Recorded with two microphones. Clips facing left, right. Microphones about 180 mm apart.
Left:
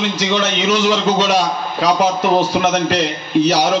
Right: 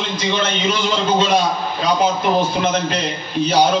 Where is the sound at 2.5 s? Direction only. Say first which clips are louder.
Left 3 dB; 80° left.